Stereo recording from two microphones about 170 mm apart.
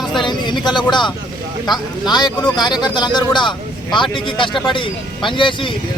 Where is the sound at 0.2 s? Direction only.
25° left (ahead or behind).